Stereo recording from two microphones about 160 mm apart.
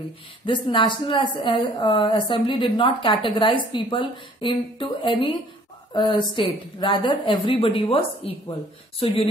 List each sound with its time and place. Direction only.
0.5 s a woman's voice: 30° left (ahead or behind)